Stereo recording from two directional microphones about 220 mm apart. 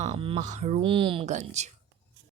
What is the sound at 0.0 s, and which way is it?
A woman's voice, 25° right (ahead or behind).